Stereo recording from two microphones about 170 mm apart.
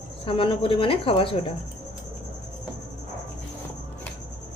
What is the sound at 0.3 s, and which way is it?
A woman's voice, 30° left (ahead or behind).